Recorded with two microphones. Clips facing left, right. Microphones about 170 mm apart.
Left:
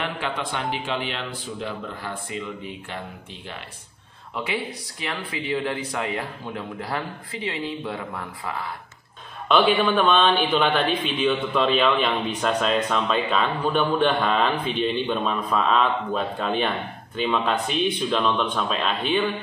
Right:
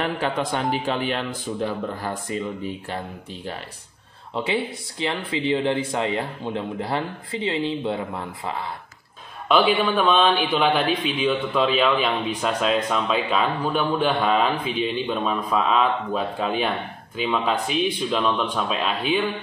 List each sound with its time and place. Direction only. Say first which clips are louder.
0.0 s a man's voice: right 4 dB; 40° right (ahead or behind)
4.4 s speech: right 4 dB; 30° right (ahead or behind)
9.5 s speech: even; 10° right (ahead or behind)